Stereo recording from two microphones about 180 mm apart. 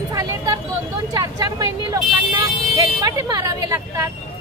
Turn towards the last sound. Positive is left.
turn(degrees=-20)  # may be behind; listen again after turning